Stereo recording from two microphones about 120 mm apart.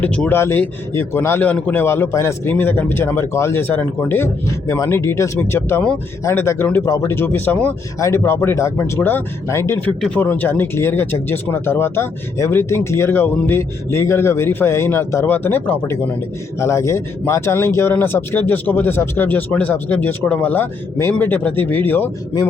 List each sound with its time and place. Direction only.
0.0 s speech: 15° left (ahead or behind)
7.9 s speech: 25° left (ahead or behind)